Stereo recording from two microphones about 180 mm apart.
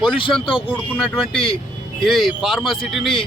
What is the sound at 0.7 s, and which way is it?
Speech, centre (ahead or behind).